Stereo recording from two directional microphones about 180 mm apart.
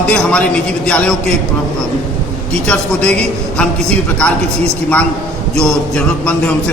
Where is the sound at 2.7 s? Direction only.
5° left (ahead or behind).